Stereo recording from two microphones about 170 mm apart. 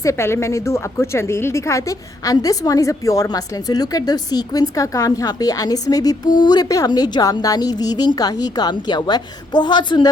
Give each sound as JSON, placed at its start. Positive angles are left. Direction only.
{"t": 0.0, "sound": "a woman's voice", "side_deg": 15}